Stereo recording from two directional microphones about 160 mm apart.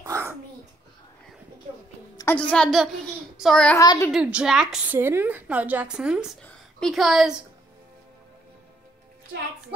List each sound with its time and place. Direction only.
0.0 s babbling: 15° right (ahead or behind)
2.3 s a woman's voice: 5° left (ahead or behind)
3.3 s child singing: centre (ahead or behind)
3.7 s a woman's voice: 20° left (ahead or behind)
4.1 s a woman's voice: 5° right (ahead or behind)
6.4 s a sound: centre (ahead or behind)